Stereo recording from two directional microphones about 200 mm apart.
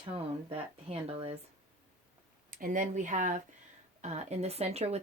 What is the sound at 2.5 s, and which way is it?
Speech, 45° right (ahead or behind).